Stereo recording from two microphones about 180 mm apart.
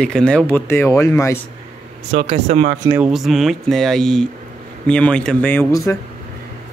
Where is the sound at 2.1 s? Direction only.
35° right (ahead or behind).